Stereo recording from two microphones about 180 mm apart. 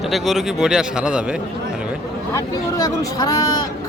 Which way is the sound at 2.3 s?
20° left (ahead or behind).